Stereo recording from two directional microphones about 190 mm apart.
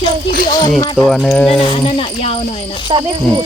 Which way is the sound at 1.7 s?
30° left (ahead or behind).